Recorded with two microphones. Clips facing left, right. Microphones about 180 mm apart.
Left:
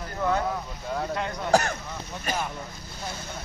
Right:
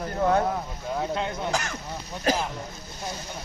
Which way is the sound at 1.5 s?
40° left (ahead or behind).